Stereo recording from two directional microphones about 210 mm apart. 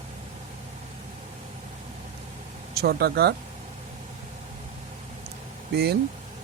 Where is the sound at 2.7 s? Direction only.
50° right (ahead or behind).